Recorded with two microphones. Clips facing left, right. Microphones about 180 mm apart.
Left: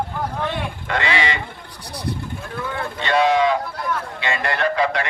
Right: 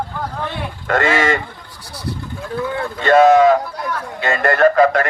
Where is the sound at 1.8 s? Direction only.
20° left (ahead or behind).